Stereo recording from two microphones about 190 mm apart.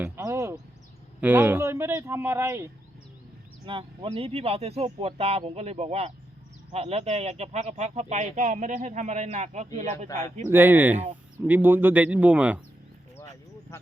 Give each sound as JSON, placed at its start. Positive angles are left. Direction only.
{"t": 0.0, "sound": "a sound", "side_deg": -15}
{"t": 1.2, "sound": "speech", "side_deg": -10}
{"t": 3.7, "sound": "speech", "side_deg": -25}
{"t": 10.5, "sound": "speech", "side_deg": -10}